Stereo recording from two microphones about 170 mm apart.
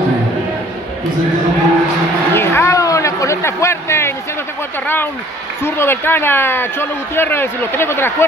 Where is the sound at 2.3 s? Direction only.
15° left (ahead or behind).